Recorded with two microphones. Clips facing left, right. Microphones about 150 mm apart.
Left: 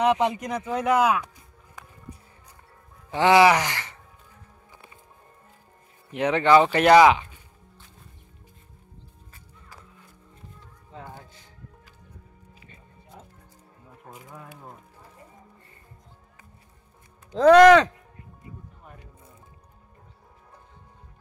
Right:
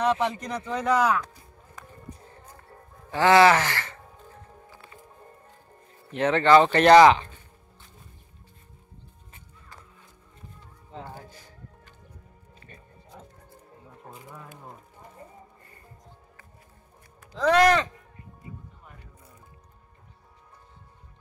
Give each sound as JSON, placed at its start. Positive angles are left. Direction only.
{"t": 0.0, "sound": "speech", "side_deg": 15}
{"t": 3.1, "sound": "speech", "side_deg": 15}
{"t": 4.6, "sound": "music", "side_deg": 20}
{"t": 6.1, "sound": "speech", "side_deg": 15}
{"t": 11.2, "sound": "music", "side_deg": 25}
{"t": 17.4, "sound": "speech", "side_deg": 75}